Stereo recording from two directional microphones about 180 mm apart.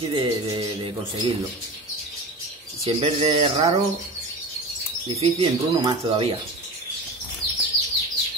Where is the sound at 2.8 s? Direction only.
35° right (ahead or behind).